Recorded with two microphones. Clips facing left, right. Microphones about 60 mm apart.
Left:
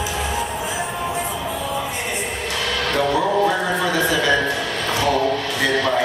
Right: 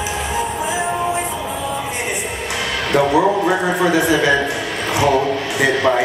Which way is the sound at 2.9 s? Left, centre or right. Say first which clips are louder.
Right 5 dB; right.